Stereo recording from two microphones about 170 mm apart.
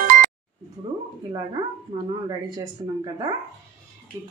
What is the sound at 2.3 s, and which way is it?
A woman's voice, 25° right (ahead or behind).